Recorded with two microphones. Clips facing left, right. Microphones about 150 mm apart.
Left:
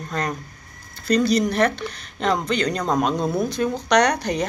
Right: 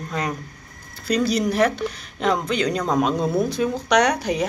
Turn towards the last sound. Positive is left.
turn(degrees=-5)  # may be behind; listen again after turning